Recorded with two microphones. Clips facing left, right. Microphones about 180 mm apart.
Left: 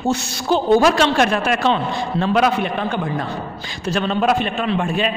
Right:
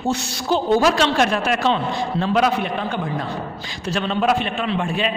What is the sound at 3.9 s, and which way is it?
A woman's voice, 45° left (ahead or behind).